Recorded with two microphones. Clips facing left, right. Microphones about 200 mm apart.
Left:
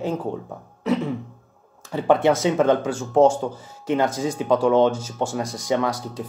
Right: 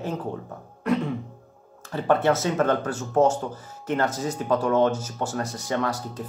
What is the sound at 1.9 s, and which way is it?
Speech, 10° left (ahead or behind).